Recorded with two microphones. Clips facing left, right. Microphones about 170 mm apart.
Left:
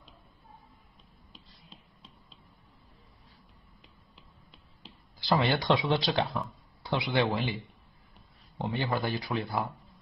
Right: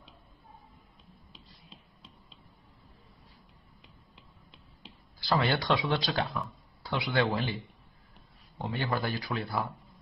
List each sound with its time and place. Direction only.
5.2 s a man's voice: 20° left (ahead or behind)